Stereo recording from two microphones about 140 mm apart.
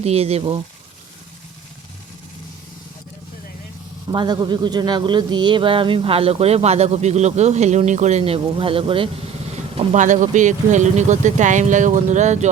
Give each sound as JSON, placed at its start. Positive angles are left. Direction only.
{"t": 0.0, "sound": "speech", "side_deg": -45}
{"t": 4.1, "sound": "speech", "side_deg": -30}
{"t": 9.7, "sound": "speech", "side_deg": -60}